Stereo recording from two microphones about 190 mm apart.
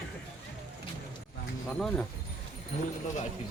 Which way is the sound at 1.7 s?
5° left (ahead or behind).